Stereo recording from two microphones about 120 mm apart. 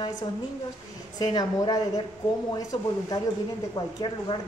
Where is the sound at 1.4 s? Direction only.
35° left (ahead or behind).